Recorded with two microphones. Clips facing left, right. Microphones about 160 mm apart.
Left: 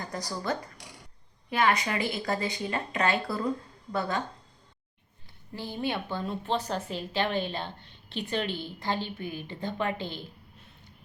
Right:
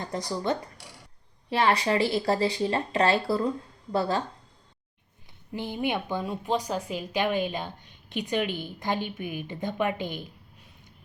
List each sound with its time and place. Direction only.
0.0 s speech: 25° right (ahead or behind)
5.5 s speech: 20° right (ahead or behind)